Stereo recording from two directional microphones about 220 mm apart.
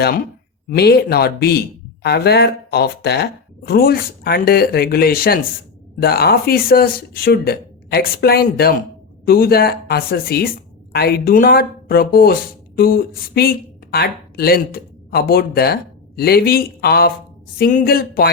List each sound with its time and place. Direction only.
0.8 s speech: 45° left (ahead or behind)